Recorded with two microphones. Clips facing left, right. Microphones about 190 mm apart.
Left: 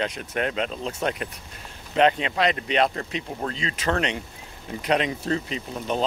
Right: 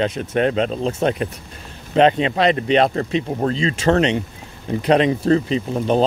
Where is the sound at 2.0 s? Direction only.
25° right (ahead or behind).